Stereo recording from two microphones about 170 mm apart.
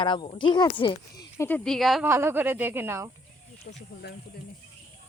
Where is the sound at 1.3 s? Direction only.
15° left (ahead or behind).